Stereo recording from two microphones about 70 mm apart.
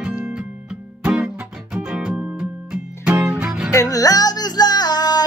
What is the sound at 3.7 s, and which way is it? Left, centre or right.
Music, left.